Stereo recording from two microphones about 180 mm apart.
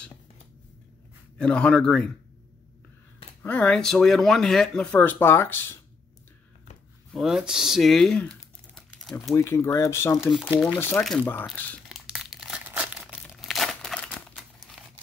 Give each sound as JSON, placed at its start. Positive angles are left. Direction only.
{"t": 1.4, "sound": "speech", "side_deg": 5}
{"t": 3.4, "sound": "speech", "side_deg": 5}
{"t": 7.1, "sound": "speech", "side_deg": 0}
{"t": 9.3, "sound": "speech", "side_deg": 15}
{"t": 11.9, "sound": "crumpling", "side_deg": 0}